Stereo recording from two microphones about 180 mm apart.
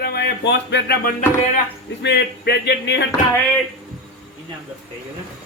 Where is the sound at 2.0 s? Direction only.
70° left (ahead or behind).